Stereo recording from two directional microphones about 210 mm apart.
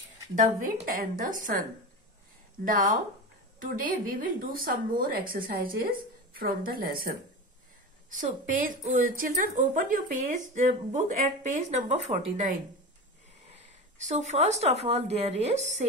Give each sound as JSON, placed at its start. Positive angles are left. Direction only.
{"t": 0.4, "sound": "a woman's voice", "side_deg": -40}
{"t": 13.9, "sound": "a woman's voice", "side_deg": -35}